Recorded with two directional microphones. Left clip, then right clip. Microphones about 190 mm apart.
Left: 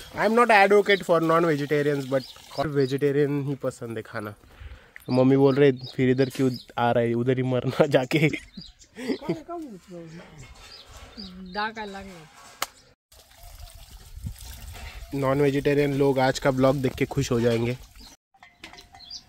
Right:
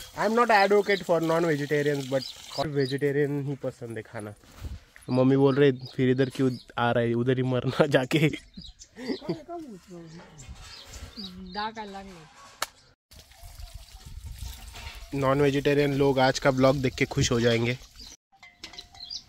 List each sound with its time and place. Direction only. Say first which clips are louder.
0.1 s speech: left 3 dB; 15° left (ahead or behind)
5.0 s speech: left 3 dB; 5° left (ahead or behind)
8.9 s speech: left 4 dB; 15° left (ahead or behind)
11.5 s speech: left 4 dB; 5° left (ahead or behind)
15.0 s speech: left 1 dB; 5° left (ahead or behind)